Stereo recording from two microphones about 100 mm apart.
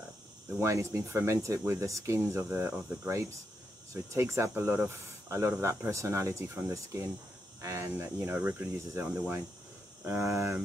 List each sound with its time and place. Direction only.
0.6 s speech: 25° right (ahead or behind)